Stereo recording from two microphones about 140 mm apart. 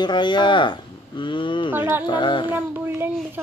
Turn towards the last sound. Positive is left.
turn(degrees=-15)  # may be behind; listen again after turning